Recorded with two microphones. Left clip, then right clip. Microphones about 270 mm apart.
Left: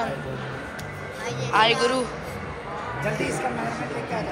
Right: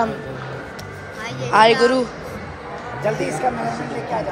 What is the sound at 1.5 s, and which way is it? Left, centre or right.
Speech, right.